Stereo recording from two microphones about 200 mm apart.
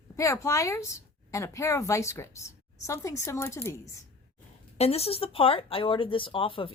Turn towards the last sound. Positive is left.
turn(degrees=25)  # may be behind; listen again after turning